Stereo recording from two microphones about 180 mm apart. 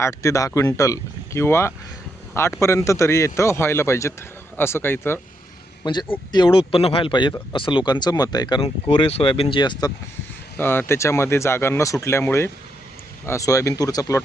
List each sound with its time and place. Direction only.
0.0 s speech: 15° left (ahead or behind)
5.8 s speech: 25° left (ahead or behind)
10.6 s speech: 10° left (ahead or behind)